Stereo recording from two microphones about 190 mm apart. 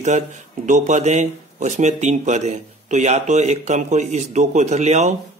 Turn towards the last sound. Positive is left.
turn(degrees=-35)  # may be behind; listen again after turning